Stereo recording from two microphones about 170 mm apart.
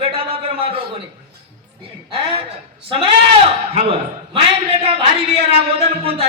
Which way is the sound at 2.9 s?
35° right (ahead or behind).